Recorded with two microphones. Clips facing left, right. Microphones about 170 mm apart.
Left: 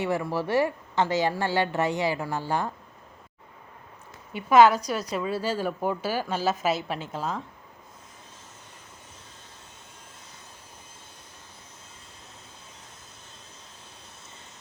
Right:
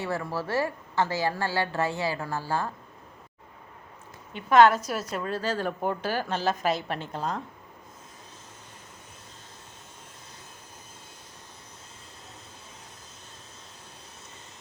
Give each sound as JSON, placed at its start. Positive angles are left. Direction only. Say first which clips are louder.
{"t": 0.0, "sound": "a woman's voice", "louder": "left 4 dB", "side_deg": 15}
{"t": 4.4, "sound": "a woman's voice", "louder": "left 1 dB", "side_deg": 5}